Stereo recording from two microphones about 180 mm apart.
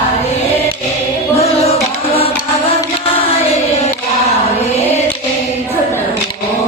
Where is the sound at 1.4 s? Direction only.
35° left (ahead or behind).